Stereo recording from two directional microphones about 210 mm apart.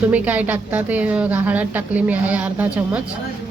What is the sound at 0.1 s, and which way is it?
A woman's voice, 5° right (ahead or behind).